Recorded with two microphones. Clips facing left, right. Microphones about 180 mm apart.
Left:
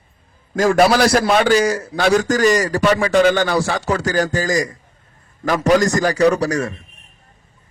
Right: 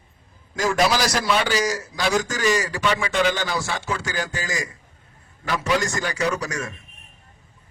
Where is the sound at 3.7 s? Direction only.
40° left (ahead or behind).